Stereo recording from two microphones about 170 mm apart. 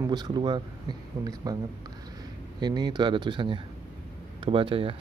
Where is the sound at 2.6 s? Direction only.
25° right (ahead or behind).